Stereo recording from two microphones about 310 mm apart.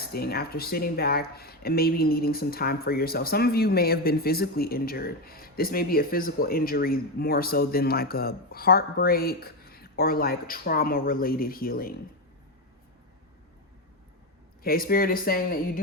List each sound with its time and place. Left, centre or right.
0.1 s speech: left
14.6 s speech: left